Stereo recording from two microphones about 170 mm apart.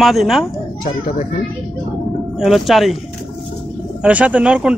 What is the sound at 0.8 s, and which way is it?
Speech, 55° left (ahead or behind).